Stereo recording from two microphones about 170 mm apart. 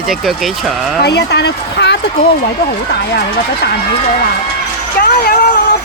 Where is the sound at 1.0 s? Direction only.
80° left.